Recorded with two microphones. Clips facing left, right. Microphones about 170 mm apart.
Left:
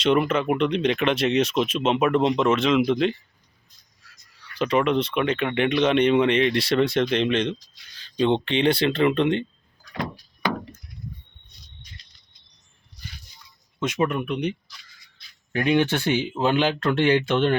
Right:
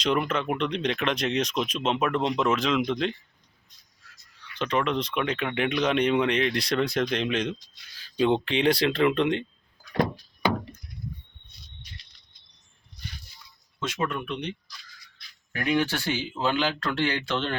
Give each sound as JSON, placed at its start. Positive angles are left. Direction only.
{"t": 0.0, "sound": "speech", "side_deg": 5}
{"t": 4.6, "sound": "speech", "side_deg": 5}
{"t": 13.7, "sound": "speech", "side_deg": 20}
{"t": 15.5, "sound": "speech", "side_deg": 25}